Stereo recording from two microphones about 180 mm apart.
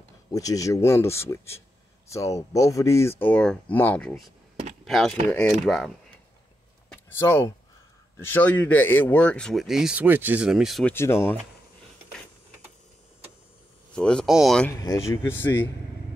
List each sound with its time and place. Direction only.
0.3 s speech: 20° left (ahead or behind); by 5.9 s 5° left (ahead or behind)
6.9 s a sound: 10° left (ahead or behind)
8.2 s speech: 10° left (ahead or behind)
10.9 s speech: 15° left (ahead or behind)
13.9 s speech: 5° left (ahead or behind)